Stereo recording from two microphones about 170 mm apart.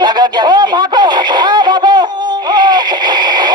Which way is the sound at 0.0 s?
25° right (ahead or behind).